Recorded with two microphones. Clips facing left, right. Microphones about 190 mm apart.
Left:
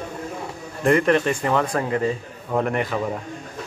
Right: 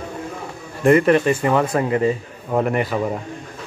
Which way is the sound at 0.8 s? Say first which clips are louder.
Right 4 dB; 5° right (ahead or behind).